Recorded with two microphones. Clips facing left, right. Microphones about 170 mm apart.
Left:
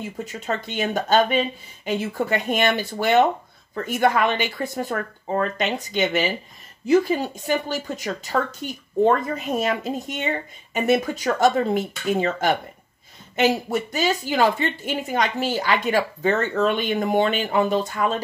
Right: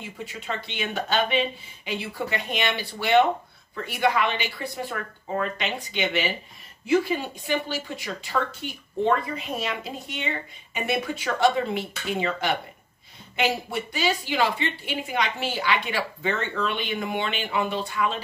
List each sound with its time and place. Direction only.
0.0 s a woman's voice: 40° left (ahead or behind)